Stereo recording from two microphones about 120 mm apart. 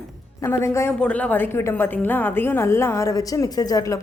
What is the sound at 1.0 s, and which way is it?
A woman's voice, 10° left (ahead or behind).